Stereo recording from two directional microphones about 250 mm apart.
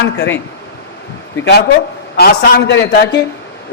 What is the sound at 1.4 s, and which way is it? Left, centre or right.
A man's voice, left.